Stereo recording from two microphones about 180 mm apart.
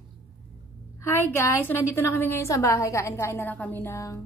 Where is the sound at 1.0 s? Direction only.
10° left (ahead or behind).